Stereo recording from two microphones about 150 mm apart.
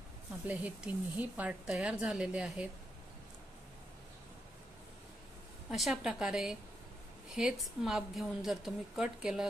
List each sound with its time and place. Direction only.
0.5 s a woman's voice: 10° right (ahead or behind)
5.7 s a woman's voice: 5° right (ahead or behind)